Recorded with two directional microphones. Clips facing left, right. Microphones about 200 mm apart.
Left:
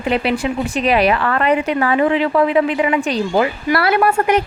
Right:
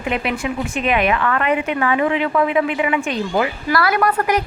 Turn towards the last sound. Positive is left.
turn(degrees=25)  # may be behind; listen again after turning